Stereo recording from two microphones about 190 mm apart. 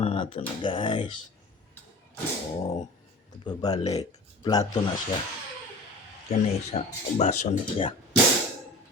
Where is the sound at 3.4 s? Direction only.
20° left (ahead or behind).